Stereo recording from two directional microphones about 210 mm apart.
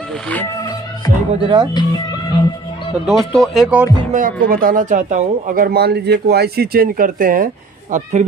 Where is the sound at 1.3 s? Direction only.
25° right (ahead or behind).